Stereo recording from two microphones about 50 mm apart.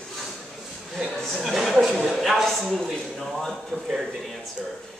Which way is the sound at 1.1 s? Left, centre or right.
Centre.